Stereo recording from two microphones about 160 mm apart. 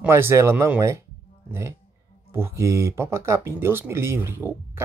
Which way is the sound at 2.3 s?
15° right (ahead or behind).